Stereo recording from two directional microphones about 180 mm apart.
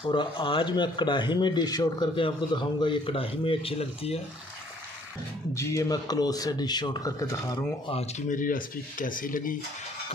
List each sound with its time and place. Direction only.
0.1 s speech: 25° left (ahead or behind)
5.5 s speech: 15° left (ahead or behind)
7.9 s speech: 35° left (ahead or behind)